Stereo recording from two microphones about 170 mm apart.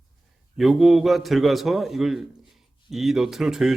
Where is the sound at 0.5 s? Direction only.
Centre (ahead or behind).